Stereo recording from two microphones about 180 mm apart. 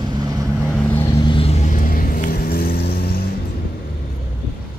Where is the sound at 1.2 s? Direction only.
30° left (ahead or behind); by 3.2 s 60° left (ahead or behind).